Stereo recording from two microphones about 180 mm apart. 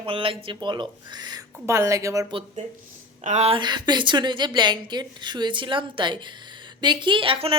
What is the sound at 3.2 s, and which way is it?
A woman's voice, 35° right (ahead or behind).